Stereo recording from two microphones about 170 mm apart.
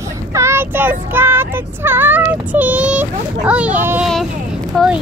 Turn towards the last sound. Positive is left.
turn(degrees=-5)  # may be behind; listen again after turning